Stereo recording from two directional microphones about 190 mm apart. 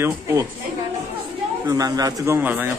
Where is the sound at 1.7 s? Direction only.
20° right (ahead or behind).